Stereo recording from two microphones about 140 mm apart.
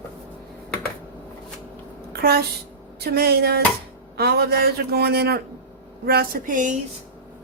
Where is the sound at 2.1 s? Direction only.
90° right.